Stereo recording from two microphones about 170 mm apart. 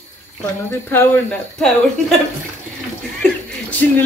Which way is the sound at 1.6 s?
Centre (ahead or behind).